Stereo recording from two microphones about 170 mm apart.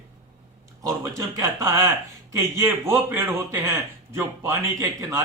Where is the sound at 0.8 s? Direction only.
20° right (ahead or behind).